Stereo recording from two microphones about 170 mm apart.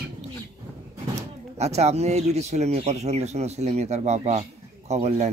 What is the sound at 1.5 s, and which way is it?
Speech, 40° right (ahead or behind).